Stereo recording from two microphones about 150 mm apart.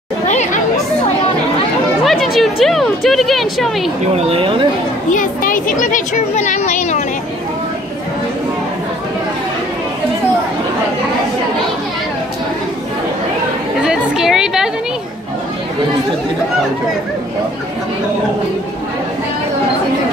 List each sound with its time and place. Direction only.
0.3 s chatter: 50° left (ahead or behind)
2.0 s speech: centre (ahead or behind)
4.1 s speech: 40° right (ahead or behind)
5.1 s speech: 60° left (ahead or behind)
13.8 s speech: 5° right (ahead or behind)